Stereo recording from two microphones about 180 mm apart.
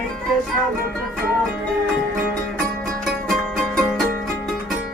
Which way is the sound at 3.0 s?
Centre (ahead or behind).